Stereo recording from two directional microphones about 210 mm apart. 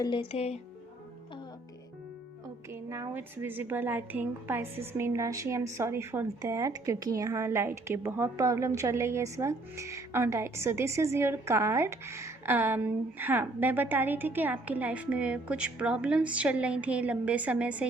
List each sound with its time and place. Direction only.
0.0 s speech: 25° left (ahead or behind)
2.7 s a woman's voice: 15° right (ahead or behind)